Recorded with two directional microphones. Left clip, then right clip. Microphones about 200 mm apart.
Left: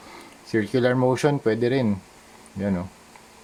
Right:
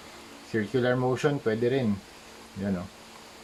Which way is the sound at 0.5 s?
45° left (ahead or behind).